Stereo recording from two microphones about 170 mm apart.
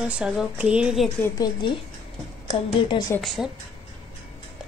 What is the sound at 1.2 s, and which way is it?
Speech, 25° left (ahead or behind).